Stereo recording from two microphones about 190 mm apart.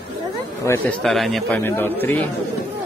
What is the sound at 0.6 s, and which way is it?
Speech, 10° left (ahead or behind).